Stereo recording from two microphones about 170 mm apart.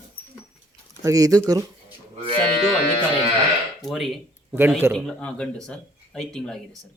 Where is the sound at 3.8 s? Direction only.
Centre (ahead or behind).